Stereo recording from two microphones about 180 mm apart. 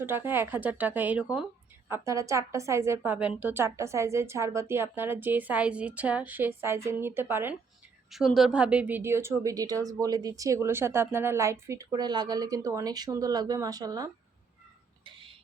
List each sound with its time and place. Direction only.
0.0 s a woman's voice: 10° right (ahead or behind)
8.1 s a woman's voice: centre (ahead or behind); by 14.1 s 20° right (ahead or behind)